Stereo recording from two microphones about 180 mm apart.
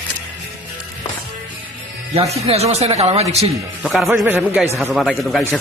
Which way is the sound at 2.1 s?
35° right (ahead or behind).